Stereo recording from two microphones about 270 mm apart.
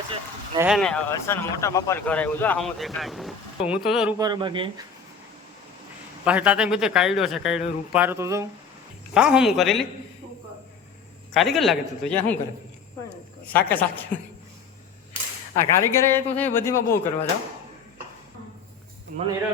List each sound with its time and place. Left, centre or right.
0.1 s speech: centre
0.7 s a man's voice: centre
4.2 s speech: centre
6.2 s a man's voice: centre
11.3 s a man's voice: centre
13.5 s speech: centre
15.5 s speech: centre